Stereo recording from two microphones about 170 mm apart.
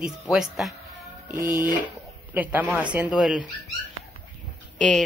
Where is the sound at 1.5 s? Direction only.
25° left (ahead or behind).